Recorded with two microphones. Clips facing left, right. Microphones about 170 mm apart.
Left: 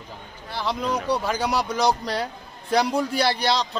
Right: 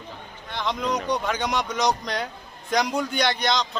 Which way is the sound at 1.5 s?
35° left (ahead or behind).